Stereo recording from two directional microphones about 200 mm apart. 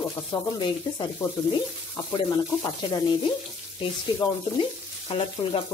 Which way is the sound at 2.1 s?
20° left (ahead or behind).